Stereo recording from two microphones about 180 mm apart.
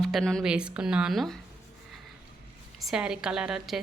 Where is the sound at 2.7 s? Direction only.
Centre (ahead or behind).